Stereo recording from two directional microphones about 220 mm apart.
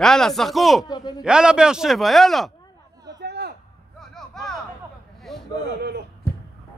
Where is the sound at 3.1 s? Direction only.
50° right (ahead or behind).